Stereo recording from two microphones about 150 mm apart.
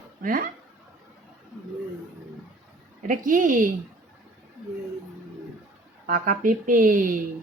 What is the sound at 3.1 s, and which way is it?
Speech, 60° right (ahead or behind).